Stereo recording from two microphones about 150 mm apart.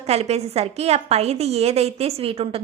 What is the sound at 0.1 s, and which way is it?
A woman's voice, 45° right (ahead or behind).